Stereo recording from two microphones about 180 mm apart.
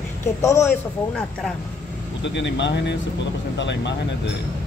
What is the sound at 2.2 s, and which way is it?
Speech, 80° left.